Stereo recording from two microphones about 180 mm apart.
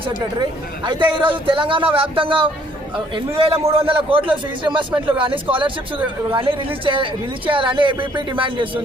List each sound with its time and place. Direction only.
0.9 s a man's voice: 25° right (ahead or behind)